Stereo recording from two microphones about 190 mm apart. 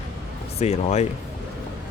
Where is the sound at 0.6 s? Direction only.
35° left (ahead or behind).